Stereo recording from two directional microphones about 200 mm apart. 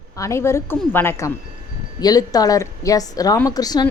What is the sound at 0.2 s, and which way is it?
Speech, 15° left (ahead or behind).